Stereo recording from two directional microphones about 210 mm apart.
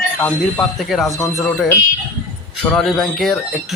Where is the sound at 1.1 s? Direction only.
15° left (ahead or behind).